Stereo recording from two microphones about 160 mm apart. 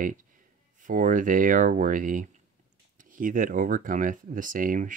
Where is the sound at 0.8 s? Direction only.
55° right (ahead or behind).